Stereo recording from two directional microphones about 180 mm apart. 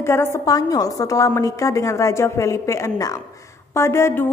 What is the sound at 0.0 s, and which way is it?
A woman's voice, 15° left (ahead or behind).